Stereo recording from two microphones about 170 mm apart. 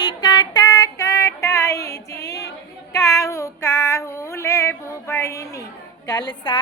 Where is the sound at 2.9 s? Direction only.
20° left (ahead or behind).